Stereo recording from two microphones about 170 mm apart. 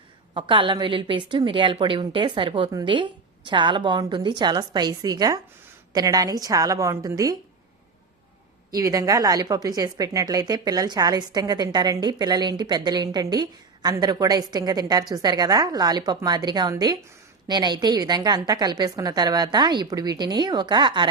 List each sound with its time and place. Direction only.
0.3 s a woman's voice: 30° right (ahead or behind)
8.7 s a woman's voice: 20° right (ahead or behind)